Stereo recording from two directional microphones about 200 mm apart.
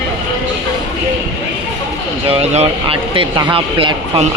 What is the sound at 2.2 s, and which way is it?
Speech, 30° right (ahead or behind).